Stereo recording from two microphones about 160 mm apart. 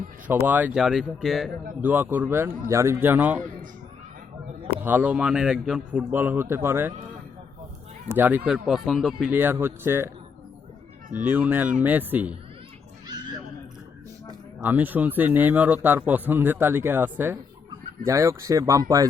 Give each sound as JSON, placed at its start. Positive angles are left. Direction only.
{"t": 0.3, "sound": "speech", "side_deg": -10}
{"t": 1.8, "sound": "a man's voice", "side_deg": -10}
{"t": 4.8, "sound": "a man's voice", "side_deg": -10}
{"t": 8.1, "sound": "a man's voice", "side_deg": -10}
{"t": 11.2, "sound": "a man's voice", "side_deg": -10}
{"t": 14.6, "sound": "a man's voice", "side_deg": -10}